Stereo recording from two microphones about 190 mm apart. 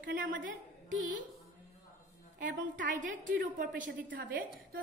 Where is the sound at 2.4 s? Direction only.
45° right (ahead or behind).